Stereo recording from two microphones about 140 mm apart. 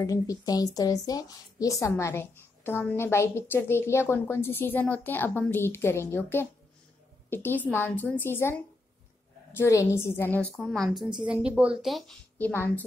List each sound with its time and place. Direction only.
0.0 s a woman's voice: 25° left (ahead or behind)
9.6 s a woman's voice: 20° left (ahead or behind)
10.5 s speech: centre (ahead or behind)
12.4 s a woman's voice: 15° left (ahead or behind)